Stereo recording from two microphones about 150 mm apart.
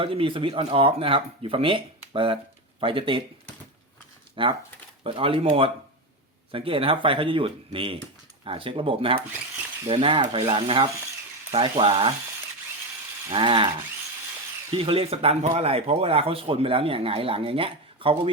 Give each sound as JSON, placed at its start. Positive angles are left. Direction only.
{"t": 0.0, "sound": "speech", "side_deg": -35}
{"t": 4.4, "sound": "speech", "side_deg": -35}
{"t": 13.3, "sound": "speech", "side_deg": -35}
{"t": 14.8, "sound": "speech", "side_deg": -40}